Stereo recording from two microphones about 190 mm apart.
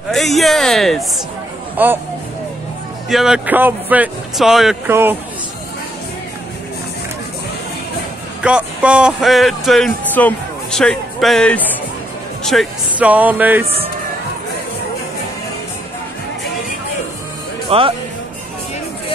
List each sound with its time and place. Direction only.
0.1 s speech: centre (ahead or behind)
1.8 s speech: 10° right (ahead or behind)
3.1 s speech: centre (ahead or behind)
8.4 s speech: 5° right (ahead or behind)
17.6 s speech: 30° right (ahead or behind)